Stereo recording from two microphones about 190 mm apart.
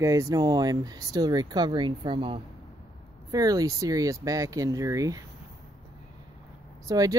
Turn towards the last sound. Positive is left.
turn(degrees=-20)  # may be behind; listen again after turning